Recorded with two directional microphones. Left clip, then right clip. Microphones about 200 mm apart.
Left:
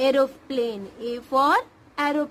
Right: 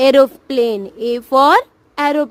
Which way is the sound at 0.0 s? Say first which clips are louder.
Right 10 dB; 50° right (ahead or behind).